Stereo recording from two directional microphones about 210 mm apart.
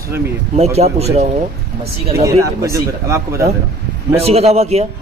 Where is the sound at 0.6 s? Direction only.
30° right (ahead or behind).